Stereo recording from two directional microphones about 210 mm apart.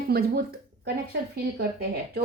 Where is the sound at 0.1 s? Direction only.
50° right (ahead or behind).